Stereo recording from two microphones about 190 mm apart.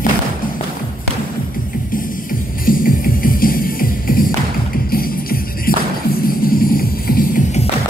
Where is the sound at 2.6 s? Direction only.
50° left (ahead or behind).